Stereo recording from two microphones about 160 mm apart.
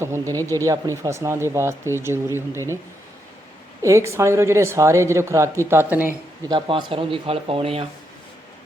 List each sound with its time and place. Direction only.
0.0 s speech: 20° right (ahead or behind)
3.8 s speech: 20° right (ahead or behind)
6.5 s speech: 30° right (ahead or behind)